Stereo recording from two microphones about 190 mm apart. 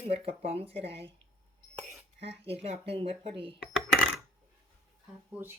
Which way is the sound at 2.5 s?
30° right (ahead or behind).